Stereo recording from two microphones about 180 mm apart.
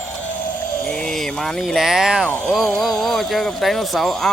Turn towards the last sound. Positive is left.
turn(degrees=0)  # may be behind; listen again after turning